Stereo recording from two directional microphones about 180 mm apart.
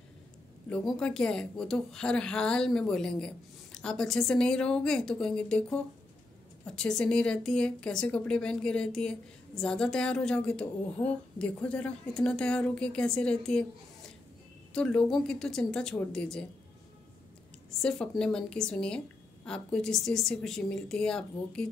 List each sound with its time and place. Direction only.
0.7 s speech: 5° left (ahead or behind)
14.7 s speech: 5° left (ahead or behind)
17.6 s speech: 5° left (ahead or behind)